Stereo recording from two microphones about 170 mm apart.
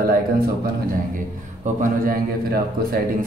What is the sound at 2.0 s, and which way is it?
Speech, 60° right (ahead or behind).